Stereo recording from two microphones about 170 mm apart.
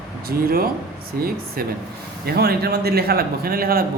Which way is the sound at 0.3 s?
60° right (ahead or behind).